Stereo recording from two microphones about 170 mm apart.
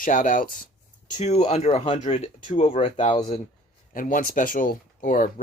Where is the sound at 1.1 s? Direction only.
40° left (ahead or behind).